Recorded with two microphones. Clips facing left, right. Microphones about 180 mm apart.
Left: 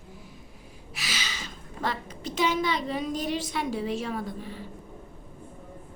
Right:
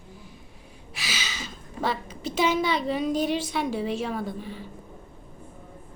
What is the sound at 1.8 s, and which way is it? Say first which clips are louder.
A woman's voice: right 3 dB; 5° right (ahead or behind).